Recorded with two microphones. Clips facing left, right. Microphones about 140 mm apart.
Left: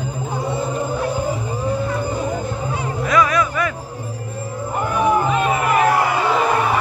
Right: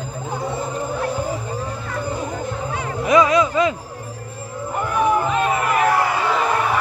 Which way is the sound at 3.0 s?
20° right (ahead or behind).